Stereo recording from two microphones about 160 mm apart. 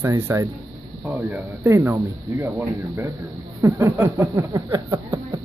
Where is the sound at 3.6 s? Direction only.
20° right (ahead or behind).